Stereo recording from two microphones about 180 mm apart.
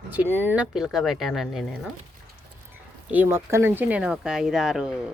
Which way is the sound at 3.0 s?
10° right (ahead or behind).